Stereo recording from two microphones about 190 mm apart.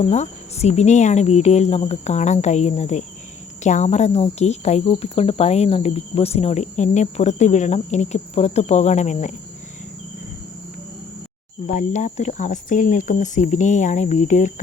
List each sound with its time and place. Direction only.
0.0 s speech: 35° left (ahead or behind)
11.6 s speech: 40° left (ahead or behind)